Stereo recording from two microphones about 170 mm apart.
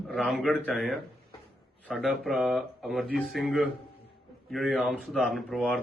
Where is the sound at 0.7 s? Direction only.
Centre (ahead or behind).